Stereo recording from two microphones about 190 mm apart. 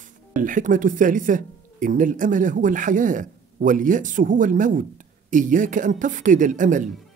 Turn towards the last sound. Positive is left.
turn(degrees=-40)  # may be behind; listen again after turning